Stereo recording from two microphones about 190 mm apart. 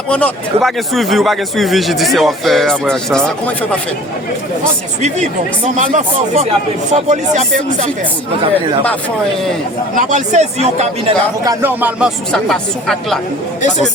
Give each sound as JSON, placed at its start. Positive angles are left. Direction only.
{"t": 0.1, "sound": "a man's voice", "side_deg": 5}
{"t": 5.7, "sound": "a man's voice", "side_deg": -40}
{"t": 9.9, "sound": "a man's voice", "side_deg": -40}
{"t": 11.4, "sound": "a man's voice", "side_deg": -10}
{"t": 13.6, "sound": "speech", "side_deg": 40}